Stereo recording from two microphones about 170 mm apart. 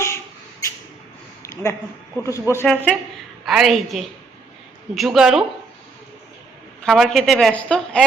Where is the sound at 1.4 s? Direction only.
15° left (ahead or behind).